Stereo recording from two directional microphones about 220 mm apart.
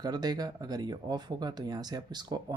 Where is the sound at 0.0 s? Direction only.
20° right (ahead or behind).